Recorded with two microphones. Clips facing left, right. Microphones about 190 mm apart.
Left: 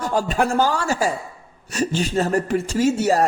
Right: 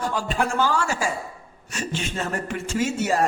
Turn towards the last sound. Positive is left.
turn(degrees=40)  # may be behind; listen again after turning